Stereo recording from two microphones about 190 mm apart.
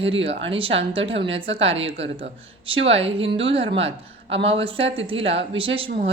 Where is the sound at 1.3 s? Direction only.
30° right (ahead or behind).